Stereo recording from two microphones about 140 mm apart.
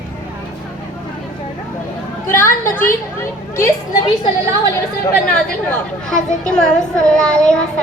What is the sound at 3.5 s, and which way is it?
Speech, 25° left (ahead or behind).